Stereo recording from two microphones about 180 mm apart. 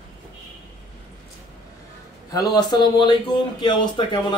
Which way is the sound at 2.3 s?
20° left (ahead or behind).